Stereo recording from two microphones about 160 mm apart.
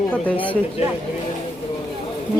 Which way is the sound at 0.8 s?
40° left (ahead or behind).